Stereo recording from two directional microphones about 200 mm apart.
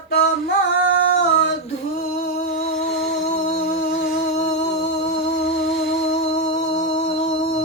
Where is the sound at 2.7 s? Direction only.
Centre (ahead or behind).